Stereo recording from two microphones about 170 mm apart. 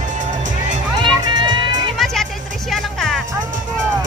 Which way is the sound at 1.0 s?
25° right (ahead or behind).